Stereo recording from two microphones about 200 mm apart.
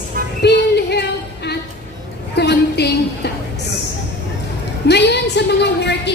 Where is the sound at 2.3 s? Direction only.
55° left (ahead or behind).